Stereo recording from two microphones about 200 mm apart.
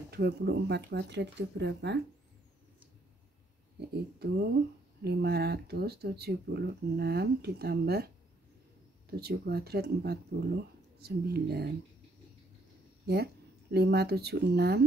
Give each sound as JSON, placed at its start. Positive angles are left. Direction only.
{"t": 0.1, "sound": "speech", "side_deg": -55}
{"t": 3.9, "sound": "speech", "side_deg": -55}
{"t": 9.2, "sound": "speech", "side_deg": -50}
{"t": 13.0, "sound": "speech", "side_deg": -55}